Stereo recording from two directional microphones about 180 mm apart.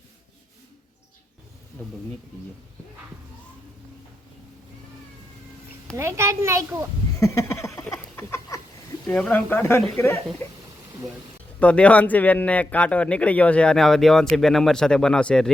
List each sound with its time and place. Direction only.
1.8 s speech: 10° left (ahead or behind)
6.0 s a child's voice: 15° right (ahead or behind)
7.2 s a sound: 15° left (ahead or behind)
9.0 s speech: 5° left (ahead or behind)
11.6 s speech: 5° left (ahead or behind)